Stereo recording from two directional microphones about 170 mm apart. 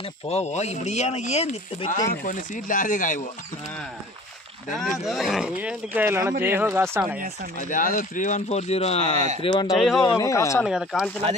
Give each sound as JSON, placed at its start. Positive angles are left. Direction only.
{"t": 0.3, "sound": "speech", "side_deg": 40}
{"t": 5.0, "sound": "speech", "side_deg": 0}
{"t": 7.5, "sound": "speech", "side_deg": 50}
{"t": 9.4, "sound": "speech", "side_deg": 25}
{"t": 10.6, "sound": "speech", "side_deg": 0}